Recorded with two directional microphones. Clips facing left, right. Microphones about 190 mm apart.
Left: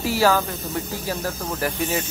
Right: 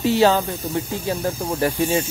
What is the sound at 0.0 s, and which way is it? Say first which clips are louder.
Speech: right 3 dB; 25° right (ahead or behind).